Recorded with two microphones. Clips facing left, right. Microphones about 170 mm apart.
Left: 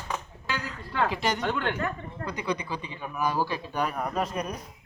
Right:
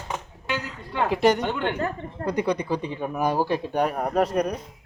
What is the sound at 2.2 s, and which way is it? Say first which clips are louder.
Speech: right 7 dB; 60° right (ahead or behind).